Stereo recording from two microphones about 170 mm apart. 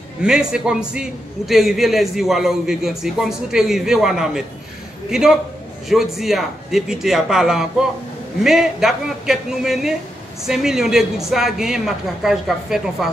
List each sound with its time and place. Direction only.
0.2 s a man's voice: 5° right (ahead or behind)
5.9 s a man's voice: centre (ahead or behind)